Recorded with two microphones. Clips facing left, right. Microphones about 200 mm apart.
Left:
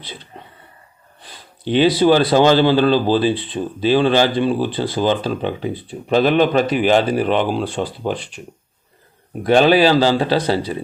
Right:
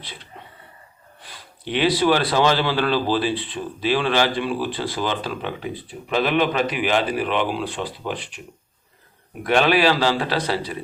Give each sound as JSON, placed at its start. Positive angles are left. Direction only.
{"t": 1.6, "sound": "speech", "side_deg": 30}
{"t": 9.3, "sound": "speech", "side_deg": 30}